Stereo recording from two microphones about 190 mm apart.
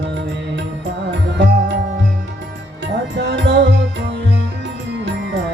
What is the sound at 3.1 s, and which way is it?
Music, 70° right (ahead or behind).